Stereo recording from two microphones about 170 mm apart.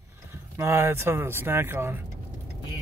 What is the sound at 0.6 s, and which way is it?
Speech, 15° right (ahead or behind).